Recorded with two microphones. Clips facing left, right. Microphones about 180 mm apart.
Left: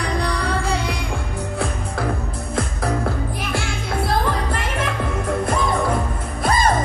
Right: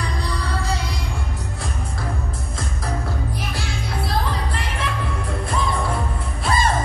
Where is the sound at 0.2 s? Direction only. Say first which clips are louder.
Left 5 dB; 60° left (ahead or behind).